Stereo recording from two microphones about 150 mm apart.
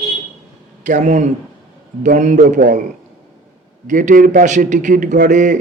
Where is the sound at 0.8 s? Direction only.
55° right (ahead or behind).